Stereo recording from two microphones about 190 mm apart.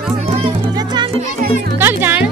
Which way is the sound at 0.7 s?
20° right (ahead or behind).